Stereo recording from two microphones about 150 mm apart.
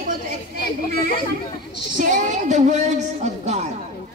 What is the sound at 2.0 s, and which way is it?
Child singing, 55° right (ahead or behind).